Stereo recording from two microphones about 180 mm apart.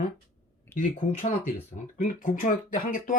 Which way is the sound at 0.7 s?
45° left (ahead or behind).